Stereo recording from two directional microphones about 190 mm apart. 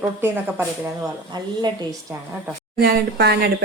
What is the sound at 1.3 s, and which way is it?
Speech, 20° right (ahead or behind).